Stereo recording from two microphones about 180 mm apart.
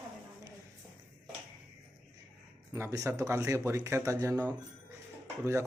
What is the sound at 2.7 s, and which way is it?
Speech, 15° right (ahead or behind).